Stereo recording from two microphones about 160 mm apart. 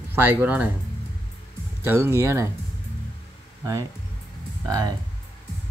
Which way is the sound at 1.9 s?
15° right (ahead or behind).